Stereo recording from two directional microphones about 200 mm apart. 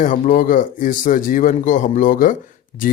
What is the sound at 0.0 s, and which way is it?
A man's voice, 40° left (ahead or behind).